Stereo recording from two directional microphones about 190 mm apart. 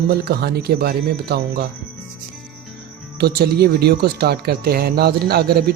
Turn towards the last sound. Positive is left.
turn(degrees=-55)  # may be behind; listen again after turning